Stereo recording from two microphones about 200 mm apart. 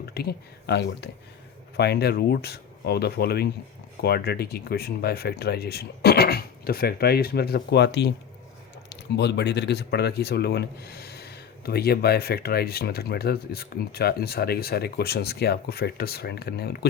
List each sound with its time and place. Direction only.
0.0 s speech: 50° left (ahead or behind)